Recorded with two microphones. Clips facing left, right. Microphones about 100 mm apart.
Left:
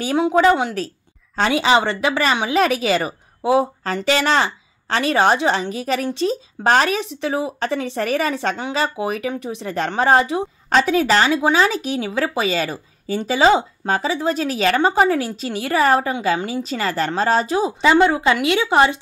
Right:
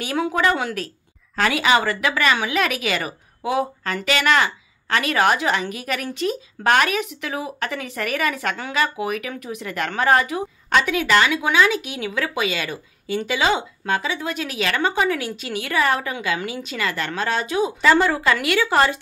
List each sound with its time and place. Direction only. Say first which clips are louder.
0.0 s a woman's voice: left 5 dB; 25° left (ahead or behind)
17.8 s a woman's voice: left 3 dB; 20° left (ahead or behind)